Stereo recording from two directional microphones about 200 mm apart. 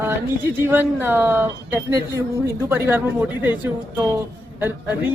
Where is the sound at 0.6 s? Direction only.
10° right (ahead or behind).